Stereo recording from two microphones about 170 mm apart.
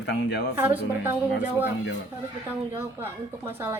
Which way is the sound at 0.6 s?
15° right (ahead or behind).